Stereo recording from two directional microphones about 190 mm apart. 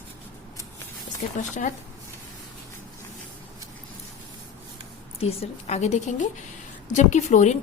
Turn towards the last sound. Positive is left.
turn(degrees=40)  # may be behind; listen again after turning